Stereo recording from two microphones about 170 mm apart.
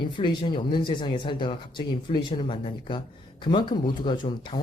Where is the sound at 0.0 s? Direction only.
25° left (ahead or behind).